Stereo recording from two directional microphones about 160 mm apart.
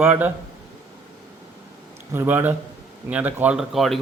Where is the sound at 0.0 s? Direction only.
10° right (ahead or behind).